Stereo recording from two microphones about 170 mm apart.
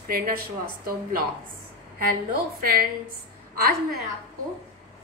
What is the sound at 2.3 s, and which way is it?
Speech, 60° right (ahead or behind).